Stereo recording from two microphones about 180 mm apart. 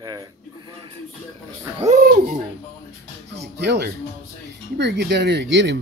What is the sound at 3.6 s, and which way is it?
Speech, 65° right (ahead or behind).